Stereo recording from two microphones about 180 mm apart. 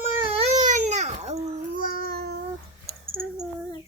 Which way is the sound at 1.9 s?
60° right (ahead or behind).